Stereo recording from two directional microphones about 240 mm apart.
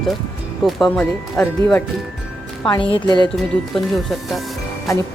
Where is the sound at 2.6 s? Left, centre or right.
Centre.